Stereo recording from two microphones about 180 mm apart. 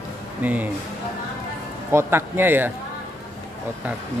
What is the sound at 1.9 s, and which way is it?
Speech, 15° right (ahead or behind).